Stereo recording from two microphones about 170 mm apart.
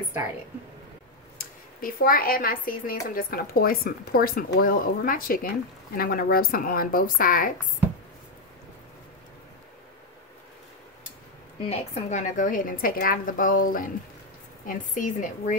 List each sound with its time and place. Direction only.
1.8 s speech: 55° left (ahead or behind)
11.7 s a woman's voice: 40° left (ahead or behind)